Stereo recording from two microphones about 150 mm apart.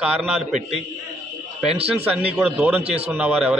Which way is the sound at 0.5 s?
50° right (ahead or behind).